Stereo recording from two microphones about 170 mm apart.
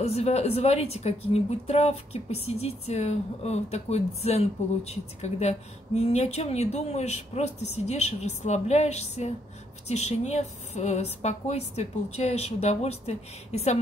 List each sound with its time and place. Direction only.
0.0 s a woman's voice: 40° left (ahead or behind)